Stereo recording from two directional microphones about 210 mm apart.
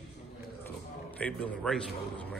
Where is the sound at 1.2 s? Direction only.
5° left (ahead or behind).